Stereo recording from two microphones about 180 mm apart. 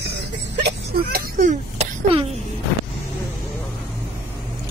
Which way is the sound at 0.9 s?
55° right (ahead or behind).